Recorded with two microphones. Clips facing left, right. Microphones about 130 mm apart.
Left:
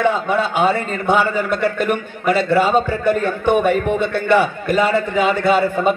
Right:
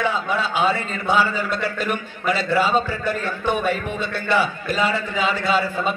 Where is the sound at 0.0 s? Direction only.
55° left (ahead or behind).